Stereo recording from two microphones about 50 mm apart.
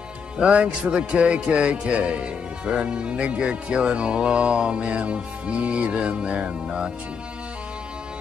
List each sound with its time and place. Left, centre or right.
0.4 s speech: right